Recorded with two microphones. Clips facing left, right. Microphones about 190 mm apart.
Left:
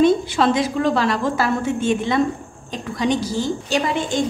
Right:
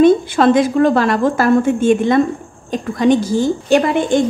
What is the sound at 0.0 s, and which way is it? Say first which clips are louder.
A woman's voice: right 5 dB; 55° right (ahead or behind).